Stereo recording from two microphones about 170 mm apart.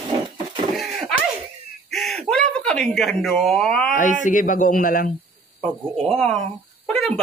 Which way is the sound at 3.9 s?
50° left (ahead or behind).